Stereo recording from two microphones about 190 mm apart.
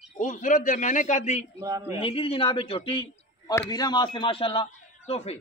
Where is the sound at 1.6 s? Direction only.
15° right (ahead or behind).